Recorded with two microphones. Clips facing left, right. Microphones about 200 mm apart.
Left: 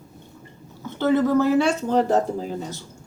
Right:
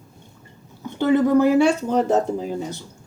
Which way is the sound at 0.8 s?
15° right (ahead or behind).